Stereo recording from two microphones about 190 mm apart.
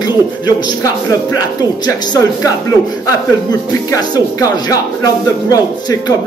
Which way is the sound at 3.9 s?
20° left (ahead or behind).